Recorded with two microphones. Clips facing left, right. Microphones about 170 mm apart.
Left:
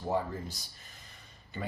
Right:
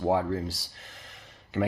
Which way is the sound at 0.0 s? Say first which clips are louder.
Right 7 dB; 90° right.